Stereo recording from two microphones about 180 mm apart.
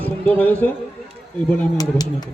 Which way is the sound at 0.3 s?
10° left (ahead or behind).